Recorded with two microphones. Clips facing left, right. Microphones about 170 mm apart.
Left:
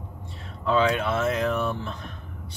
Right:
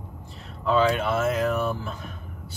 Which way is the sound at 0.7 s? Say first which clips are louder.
Right 1 dB; centre (ahead or behind).